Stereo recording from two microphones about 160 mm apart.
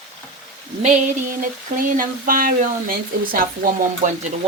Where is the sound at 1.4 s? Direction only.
60° right (ahead or behind).